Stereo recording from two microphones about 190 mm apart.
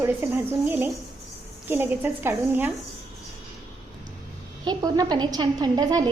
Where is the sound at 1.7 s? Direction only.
10° right (ahead or behind).